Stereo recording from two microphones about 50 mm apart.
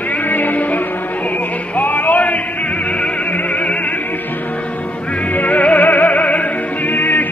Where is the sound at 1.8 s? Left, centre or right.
Left.